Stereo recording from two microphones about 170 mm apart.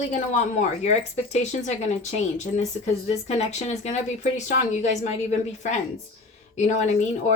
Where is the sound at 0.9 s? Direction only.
40° left (ahead or behind).